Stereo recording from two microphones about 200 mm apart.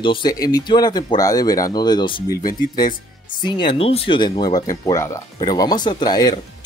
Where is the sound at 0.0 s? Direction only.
25° left (ahead or behind).